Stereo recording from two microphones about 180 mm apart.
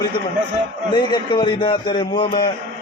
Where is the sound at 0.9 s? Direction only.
25° left (ahead or behind).